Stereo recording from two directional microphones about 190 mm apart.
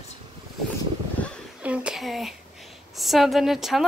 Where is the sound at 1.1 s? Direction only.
5° left (ahead or behind).